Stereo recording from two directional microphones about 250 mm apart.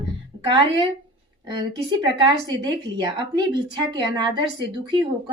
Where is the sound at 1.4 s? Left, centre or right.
Centre.